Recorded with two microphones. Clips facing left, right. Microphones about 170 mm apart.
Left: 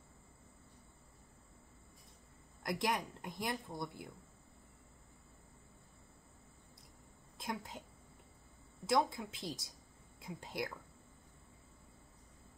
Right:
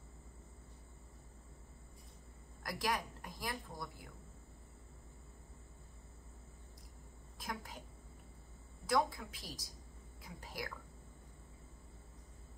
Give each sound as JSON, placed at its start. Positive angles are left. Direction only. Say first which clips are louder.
{"t": 2.6, "sound": "a woman's voice", "louder": "left 2 dB", "side_deg": 20}
{"t": 7.4, "sound": "a woman's voice", "louder": "left 3 dB", "side_deg": 25}
{"t": 8.8, "sound": "a woman's voice", "louder": "left 1 dB", "side_deg": 25}